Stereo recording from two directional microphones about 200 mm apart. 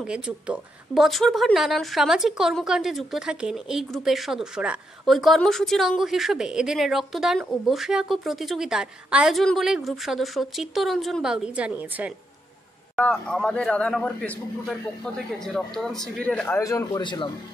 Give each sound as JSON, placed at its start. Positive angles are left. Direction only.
{"t": 0.0, "sound": "a woman's voice", "side_deg": -5}
{"t": 12.9, "sound": "a woman's voice", "side_deg": 5}